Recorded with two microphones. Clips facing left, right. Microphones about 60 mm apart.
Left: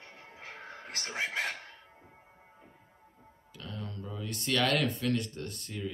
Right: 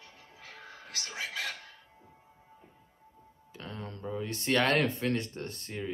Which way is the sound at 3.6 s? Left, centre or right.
Right.